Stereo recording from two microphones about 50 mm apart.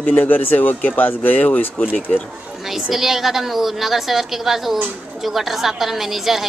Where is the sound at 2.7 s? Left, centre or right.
Centre.